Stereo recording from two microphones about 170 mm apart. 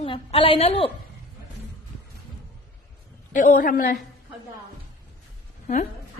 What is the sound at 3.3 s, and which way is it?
Speech, 50° left (ahead or behind).